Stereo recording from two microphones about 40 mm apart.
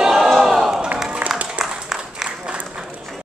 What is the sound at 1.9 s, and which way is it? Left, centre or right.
Applause, centre.